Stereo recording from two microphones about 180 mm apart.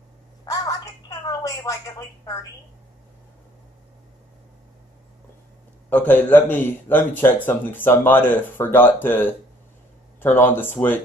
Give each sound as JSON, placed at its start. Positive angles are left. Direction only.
{"t": 0.5, "sound": "telephone", "side_deg": 20}
{"t": 5.9, "sound": "speech", "side_deg": 10}